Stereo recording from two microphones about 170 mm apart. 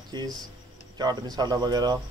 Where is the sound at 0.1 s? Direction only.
25° right (ahead or behind).